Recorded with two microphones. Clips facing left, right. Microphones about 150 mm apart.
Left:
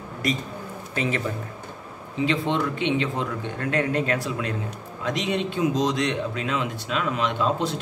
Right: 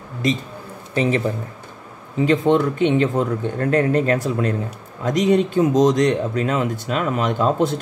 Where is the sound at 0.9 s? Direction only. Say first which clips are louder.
Right 7 dB; 35° right (ahead or behind).